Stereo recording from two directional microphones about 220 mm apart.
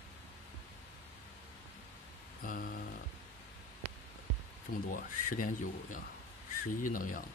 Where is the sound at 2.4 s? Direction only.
40° left (ahead or behind).